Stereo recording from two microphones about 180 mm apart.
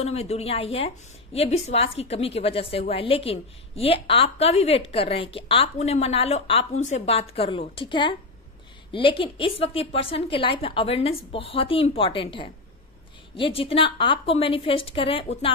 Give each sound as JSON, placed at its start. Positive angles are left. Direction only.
{"t": 0.0, "sound": "a woman's voice", "side_deg": 35}